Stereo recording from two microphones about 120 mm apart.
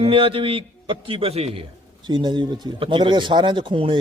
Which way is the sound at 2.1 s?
40° right (ahead or behind).